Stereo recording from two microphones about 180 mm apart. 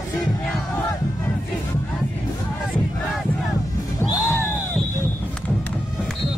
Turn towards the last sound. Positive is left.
turn(degrees=15)  # may be behind; listen again after turning